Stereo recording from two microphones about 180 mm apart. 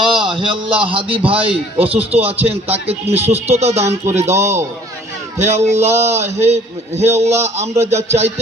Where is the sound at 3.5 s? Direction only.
35° right (ahead or behind).